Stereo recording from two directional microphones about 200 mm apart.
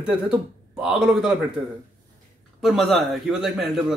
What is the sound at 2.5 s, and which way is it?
Speech, centre (ahead or behind).